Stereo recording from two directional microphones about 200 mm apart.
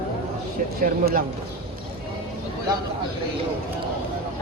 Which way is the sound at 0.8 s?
45° right (ahead or behind).